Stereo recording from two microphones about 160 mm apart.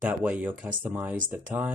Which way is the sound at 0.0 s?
10° right (ahead or behind).